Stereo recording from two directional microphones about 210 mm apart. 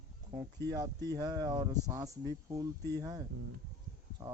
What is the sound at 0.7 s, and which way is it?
Speech, 20° right (ahead or behind).